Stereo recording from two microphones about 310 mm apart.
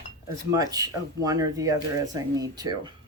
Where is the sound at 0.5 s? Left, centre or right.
Centre.